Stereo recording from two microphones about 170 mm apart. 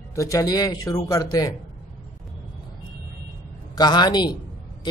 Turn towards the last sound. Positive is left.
turn(degrees=25)  # may be behind; listen again after turning